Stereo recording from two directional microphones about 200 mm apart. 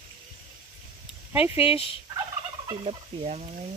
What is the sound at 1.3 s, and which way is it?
Speech, 10° right (ahead or behind).